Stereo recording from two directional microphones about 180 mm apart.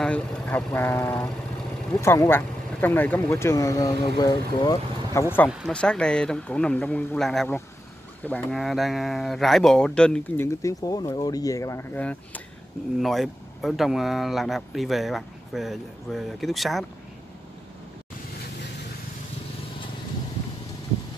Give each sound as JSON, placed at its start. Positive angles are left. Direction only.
{"t": 0.0, "sound": "speech", "side_deg": 5}
{"t": 5.5, "sound": "speech", "side_deg": 0}